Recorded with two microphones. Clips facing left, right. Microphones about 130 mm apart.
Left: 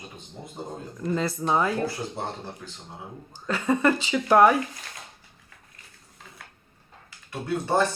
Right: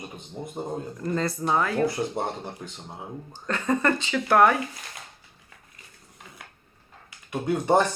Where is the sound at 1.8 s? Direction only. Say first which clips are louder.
Right 4 dB; 20° right (ahead or behind).